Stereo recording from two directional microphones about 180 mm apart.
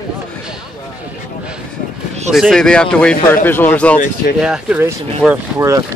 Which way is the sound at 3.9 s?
45° left (ahead or behind).